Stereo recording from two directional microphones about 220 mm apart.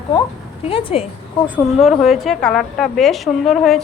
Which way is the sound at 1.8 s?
Centre (ahead or behind).